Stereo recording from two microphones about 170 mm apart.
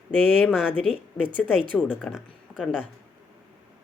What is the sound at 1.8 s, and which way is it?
Speech, 5° right (ahead or behind).